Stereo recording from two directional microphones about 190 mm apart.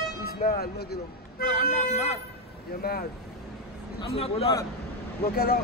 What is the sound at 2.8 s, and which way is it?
Speech, 55° left (ahead or behind).